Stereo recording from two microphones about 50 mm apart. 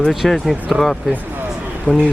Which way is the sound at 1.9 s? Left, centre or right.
Left.